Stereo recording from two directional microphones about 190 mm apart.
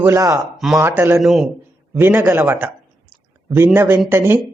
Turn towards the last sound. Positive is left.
turn(degrees=-10)  # may be behind; listen again after turning